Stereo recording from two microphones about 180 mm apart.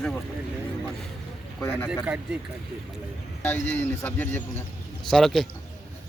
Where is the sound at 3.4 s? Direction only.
10° left (ahead or behind).